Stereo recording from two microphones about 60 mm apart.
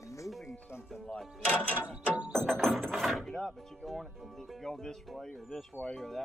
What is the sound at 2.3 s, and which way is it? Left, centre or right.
Speech, centre.